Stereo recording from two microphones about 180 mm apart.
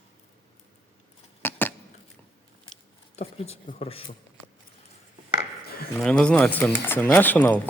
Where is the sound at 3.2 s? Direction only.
35° left (ahead or behind).